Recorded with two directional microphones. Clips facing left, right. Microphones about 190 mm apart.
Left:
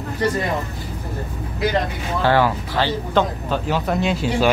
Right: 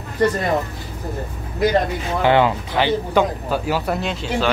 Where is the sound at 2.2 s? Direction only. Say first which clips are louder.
Right 2 dB; 20° right (ahead or behind).